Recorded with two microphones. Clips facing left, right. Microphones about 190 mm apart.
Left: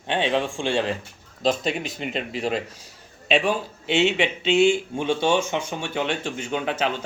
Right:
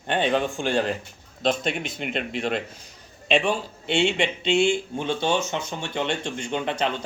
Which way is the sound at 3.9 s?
5° left (ahead or behind).